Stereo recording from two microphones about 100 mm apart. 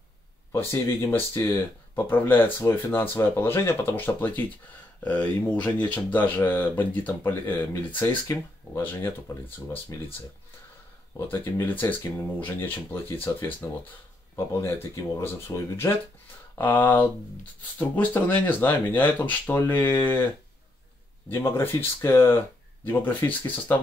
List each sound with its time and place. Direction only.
0.5 s speech: 30° left (ahead or behind)
11.1 s speech: 20° left (ahead or behind)
21.3 s speech: 25° left (ahead or behind)